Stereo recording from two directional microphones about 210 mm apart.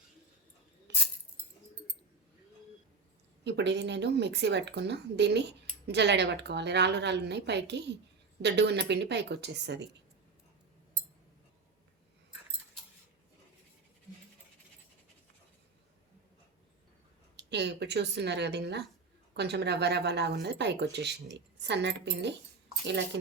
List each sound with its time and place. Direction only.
3.4 s a woman's voice: 55° right (ahead or behind)
17.3 s speech: 55° right (ahead or behind)